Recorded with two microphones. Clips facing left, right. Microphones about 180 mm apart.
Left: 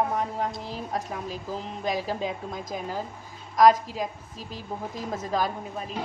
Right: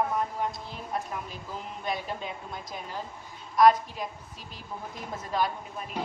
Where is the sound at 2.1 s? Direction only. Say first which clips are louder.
Left 6 dB; 90° left.